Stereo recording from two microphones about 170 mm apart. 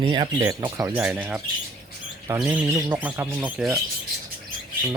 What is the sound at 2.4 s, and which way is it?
Speech, 10° right (ahead or behind).